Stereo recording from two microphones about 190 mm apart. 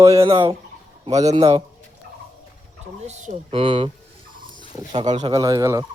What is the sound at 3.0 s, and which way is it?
Speech, 35° right (ahead or behind).